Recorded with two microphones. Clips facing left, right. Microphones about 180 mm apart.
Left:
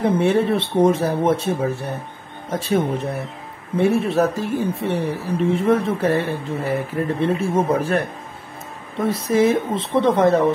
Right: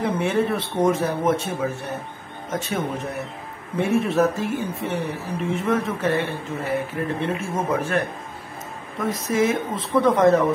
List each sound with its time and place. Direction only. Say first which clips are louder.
0.0 s speech: left 4 dB; 35° left (ahead or behind)
3.8 s speech: left 2 dB; 35° left (ahead or behind)